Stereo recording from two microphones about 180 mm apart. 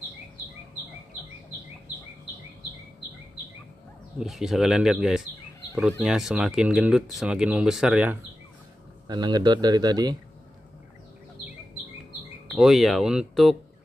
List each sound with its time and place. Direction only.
4.2 s speech: centre (ahead or behind)
9.0 s a man's voice: 25° right (ahead or behind)
12.5 s speech: centre (ahead or behind)